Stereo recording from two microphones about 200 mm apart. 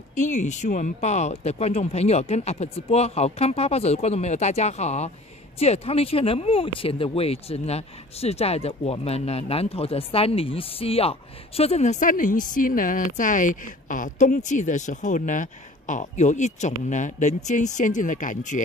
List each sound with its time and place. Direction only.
0.1 s speech: 35° left (ahead or behind)